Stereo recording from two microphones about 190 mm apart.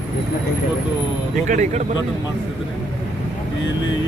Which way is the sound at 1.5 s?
40° right (ahead or behind).